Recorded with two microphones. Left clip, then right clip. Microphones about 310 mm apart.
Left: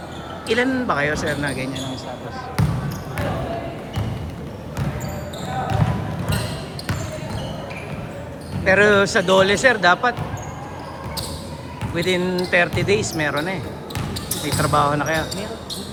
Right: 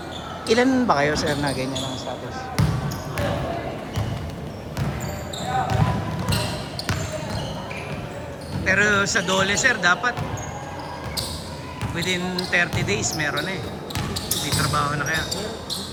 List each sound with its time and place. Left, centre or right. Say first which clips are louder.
0.4 s speech: right 1 dB; centre
8.6 s speech: left 4 dB; centre
11.9 s speech: left 5 dB; centre
14.6 s speech: left 7 dB; centre